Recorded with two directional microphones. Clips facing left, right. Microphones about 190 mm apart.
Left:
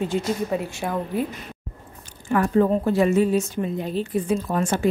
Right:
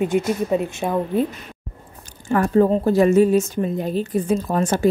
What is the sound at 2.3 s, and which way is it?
A woman's voice, 40° right (ahead or behind).